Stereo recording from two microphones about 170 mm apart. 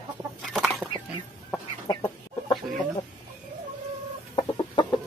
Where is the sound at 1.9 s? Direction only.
25° left (ahead or behind).